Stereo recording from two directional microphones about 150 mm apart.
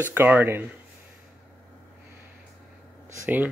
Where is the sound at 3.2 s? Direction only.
10° right (ahead or behind).